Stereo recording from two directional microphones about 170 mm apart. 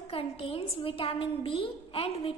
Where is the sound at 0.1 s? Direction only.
35° left (ahead or behind).